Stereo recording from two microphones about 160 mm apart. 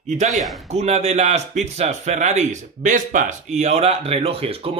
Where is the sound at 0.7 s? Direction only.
45° right (ahead or behind).